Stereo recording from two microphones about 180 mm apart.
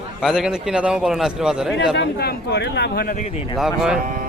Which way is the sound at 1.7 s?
65° left (ahead or behind).